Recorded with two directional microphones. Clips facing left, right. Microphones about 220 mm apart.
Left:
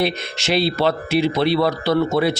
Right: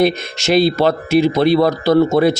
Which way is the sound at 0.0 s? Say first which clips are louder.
Right 6 dB; 45° right (ahead or behind).